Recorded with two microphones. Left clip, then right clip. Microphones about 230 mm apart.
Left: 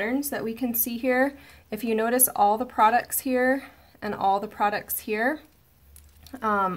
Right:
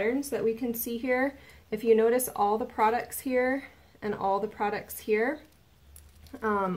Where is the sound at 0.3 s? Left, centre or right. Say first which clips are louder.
Right 1 dB; left.